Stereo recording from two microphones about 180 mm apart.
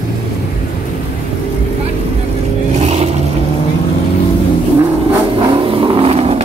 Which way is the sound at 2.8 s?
35° right (ahead or behind).